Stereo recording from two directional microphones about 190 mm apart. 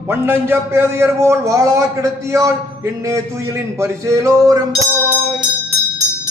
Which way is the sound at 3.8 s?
15° right (ahead or behind).